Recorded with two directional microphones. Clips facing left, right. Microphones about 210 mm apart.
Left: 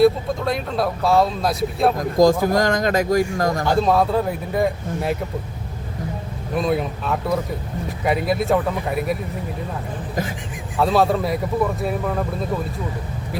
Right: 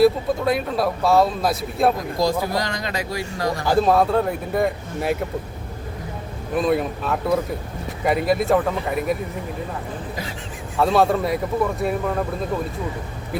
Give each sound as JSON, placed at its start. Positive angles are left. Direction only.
{"t": 0.0, "sound": "speech", "side_deg": -5}
{"t": 2.1, "sound": "speech", "side_deg": 45}
{"t": 3.7, "sound": "speech", "side_deg": 0}
{"t": 6.6, "sound": "speech", "side_deg": 0}
{"t": 10.8, "sound": "speech", "side_deg": 0}